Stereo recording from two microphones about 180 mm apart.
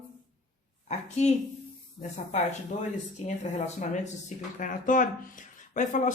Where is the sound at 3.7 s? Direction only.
40° left (ahead or behind).